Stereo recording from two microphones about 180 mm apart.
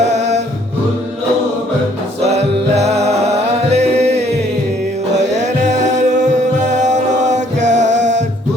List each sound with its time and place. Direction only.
0.0 s music: 40° right (ahead or behind)
2.2 s music: 35° right (ahead or behind)